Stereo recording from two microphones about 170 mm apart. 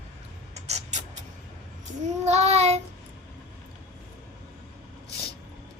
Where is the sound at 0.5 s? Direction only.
40° right (ahead or behind).